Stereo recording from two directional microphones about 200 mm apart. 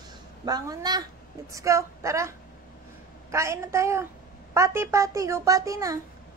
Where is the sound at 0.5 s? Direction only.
20° right (ahead or behind).